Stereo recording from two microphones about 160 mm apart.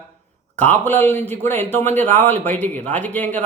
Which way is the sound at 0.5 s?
10° left (ahead or behind).